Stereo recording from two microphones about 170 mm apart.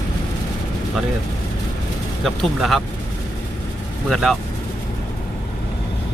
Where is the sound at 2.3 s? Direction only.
Centre (ahead or behind).